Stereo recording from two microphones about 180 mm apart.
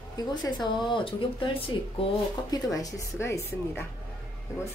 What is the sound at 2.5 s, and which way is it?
Speech, 20° left (ahead or behind).